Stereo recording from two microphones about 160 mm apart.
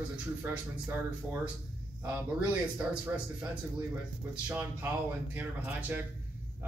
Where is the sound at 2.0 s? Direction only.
15° right (ahead or behind).